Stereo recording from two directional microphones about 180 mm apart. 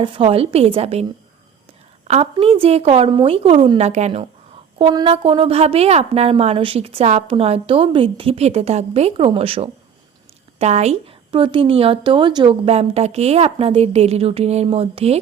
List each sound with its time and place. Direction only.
0.0 s a woman's voice: 30° right (ahead or behind)
2.0 s a woman's voice: 35° right (ahead or behind)